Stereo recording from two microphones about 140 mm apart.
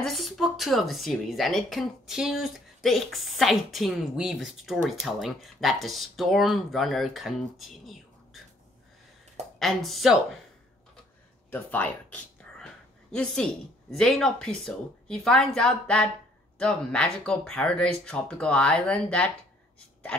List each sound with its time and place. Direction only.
0.0 s speech: centre (ahead or behind)
9.6 s speech: centre (ahead or behind)
11.5 s speech: 10° left (ahead or behind)